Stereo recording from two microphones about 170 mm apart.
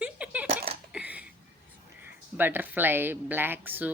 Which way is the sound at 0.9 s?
5° right (ahead or behind).